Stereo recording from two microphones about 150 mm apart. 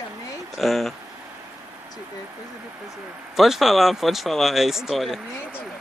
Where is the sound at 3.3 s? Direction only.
Centre (ahead or behind).